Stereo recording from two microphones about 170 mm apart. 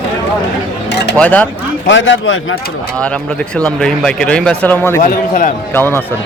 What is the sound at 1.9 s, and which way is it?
Speech, 90° left.